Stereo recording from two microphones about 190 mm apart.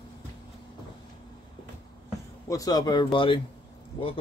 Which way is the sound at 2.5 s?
20° left (ahead or behind).